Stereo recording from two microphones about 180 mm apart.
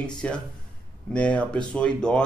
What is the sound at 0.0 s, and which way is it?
A man's voice, 5° left (ahead or behind).